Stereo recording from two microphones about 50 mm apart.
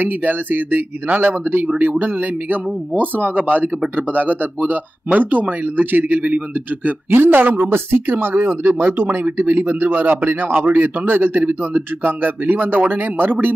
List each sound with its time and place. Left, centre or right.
0.0 s speech: right
7.1 s speech: right